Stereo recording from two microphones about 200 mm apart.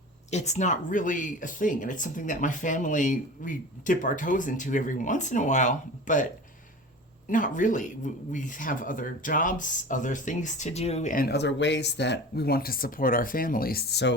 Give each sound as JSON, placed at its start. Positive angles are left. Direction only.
{"t": 0.3, "sound": "speech", "side_deg": 35}
{"t": 7.3, "sound": "speech", "side_deg": 40}